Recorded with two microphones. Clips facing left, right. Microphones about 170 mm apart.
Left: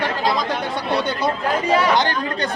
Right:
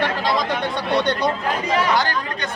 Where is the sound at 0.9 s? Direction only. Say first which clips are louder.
Right 3 dB; 5° left (ahead or behind).